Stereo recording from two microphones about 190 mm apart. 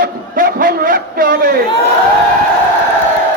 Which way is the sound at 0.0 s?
50° right (ahead or behind).